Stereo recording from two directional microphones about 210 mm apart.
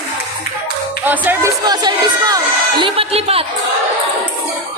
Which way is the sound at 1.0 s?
10° right (ahead or behind).